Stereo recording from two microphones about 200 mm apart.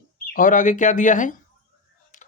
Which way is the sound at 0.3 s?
40° left (ahead or behind).